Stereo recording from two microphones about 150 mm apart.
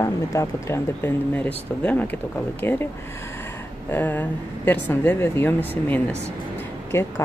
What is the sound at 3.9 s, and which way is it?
A woman's voice, 15° left (ahead or behind).